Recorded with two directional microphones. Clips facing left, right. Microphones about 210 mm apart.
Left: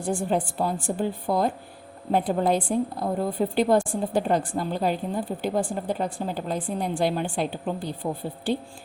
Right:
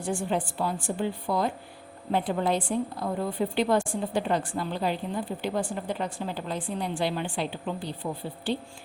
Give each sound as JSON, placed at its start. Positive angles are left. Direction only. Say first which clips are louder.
{"t": 0.0, "sound": "a woman's voice", "louder": "left 3 dB", "side_deg": 40}